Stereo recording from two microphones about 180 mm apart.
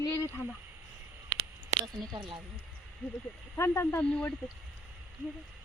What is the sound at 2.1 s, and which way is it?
Speech, 25° right (ahead or behind).